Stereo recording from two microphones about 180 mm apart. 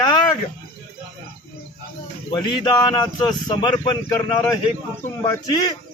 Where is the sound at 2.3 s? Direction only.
20° left (ahead or behind).